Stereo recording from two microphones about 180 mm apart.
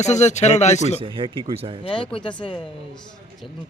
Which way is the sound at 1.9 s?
30° left (ahead or behind).